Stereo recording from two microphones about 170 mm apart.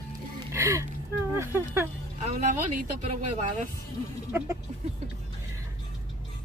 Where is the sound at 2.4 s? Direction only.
45° right (ahead or behind).